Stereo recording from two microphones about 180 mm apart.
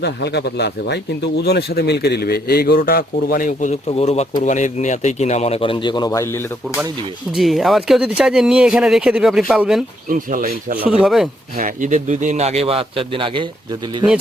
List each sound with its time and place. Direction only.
0.0 s speech: 70° left (ahead or behind); by 3.8 s 45° left (ahead or behind)
3.8 s speech: 35° left (ahead or behind); by 6.7 s 15° left (ahead or behind)
7.3 s speech: centre (ahead or behind)
10.1 s speech: 50° right (ahead or behind)
10.8 s speech: 5° right (ahead or behind)
11.5 s a man's voice: 50° right (ahead or behind); by 13.5 s 30° right (ahead or behind)